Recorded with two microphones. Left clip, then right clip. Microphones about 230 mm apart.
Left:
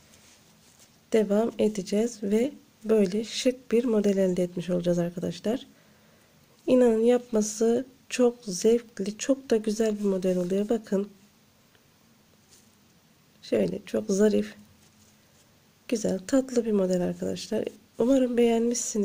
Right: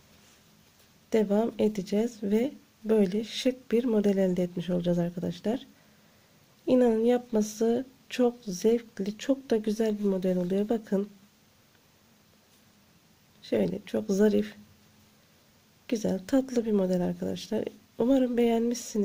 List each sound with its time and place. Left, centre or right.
1.1 s speech: centre
13.4 s speech: centre
15.9 s speech: centre